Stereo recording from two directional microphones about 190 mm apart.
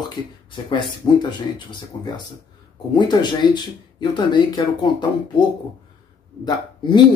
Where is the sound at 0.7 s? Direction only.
25° left (ahead or behind).